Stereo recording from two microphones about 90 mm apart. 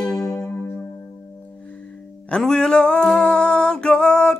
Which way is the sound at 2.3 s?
10° left (ahead or behind).